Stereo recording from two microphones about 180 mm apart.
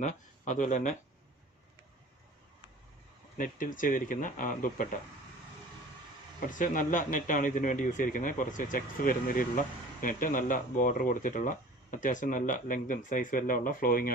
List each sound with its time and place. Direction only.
0.0 s speech: 45° left (ahead or behind)
3.3 s speech: 50° left (ahead or behind)
6.4 s speech: 50° left (ahead or behind)